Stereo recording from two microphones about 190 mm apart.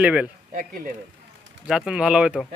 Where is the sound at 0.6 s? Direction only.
45° right (ahead or behind).